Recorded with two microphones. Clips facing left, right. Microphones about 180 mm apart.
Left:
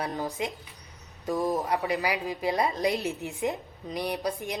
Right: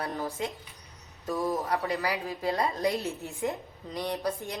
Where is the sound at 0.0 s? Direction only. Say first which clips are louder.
Left 2 dB; 15° left (ahead or behind).